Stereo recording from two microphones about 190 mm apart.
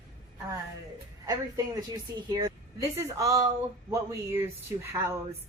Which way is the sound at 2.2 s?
20° right (ahead or behind).